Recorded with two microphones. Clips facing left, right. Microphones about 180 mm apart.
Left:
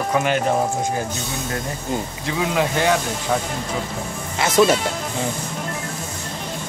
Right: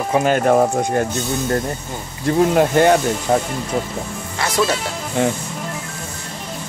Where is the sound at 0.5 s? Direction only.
60° right (ahead or behind).